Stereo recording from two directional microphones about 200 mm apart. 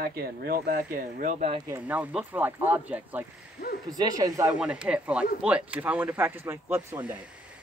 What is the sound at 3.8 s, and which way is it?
Speech, 20° right (ahead or behind).